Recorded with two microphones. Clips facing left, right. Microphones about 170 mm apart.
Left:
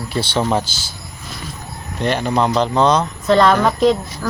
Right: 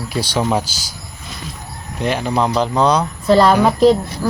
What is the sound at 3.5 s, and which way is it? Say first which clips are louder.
Speech: right 3 dB; 5° right (ahead or behind).